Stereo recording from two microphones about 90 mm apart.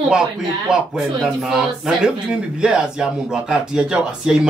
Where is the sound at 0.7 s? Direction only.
5° right (ahead or behind).